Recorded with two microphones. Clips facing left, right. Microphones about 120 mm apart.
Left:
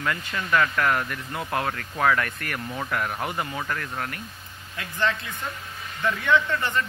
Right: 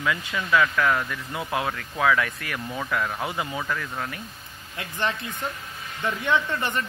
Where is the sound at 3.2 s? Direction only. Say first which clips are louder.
Even; 10° right (ahead or behind).